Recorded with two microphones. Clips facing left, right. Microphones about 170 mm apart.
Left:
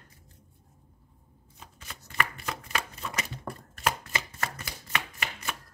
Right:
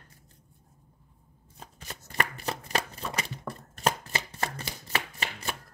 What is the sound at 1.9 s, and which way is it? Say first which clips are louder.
Shuffling cards: even; 40° right (ahead or behind).